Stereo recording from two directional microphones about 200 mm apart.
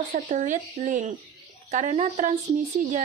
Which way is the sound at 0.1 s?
35° right (ahead or behind).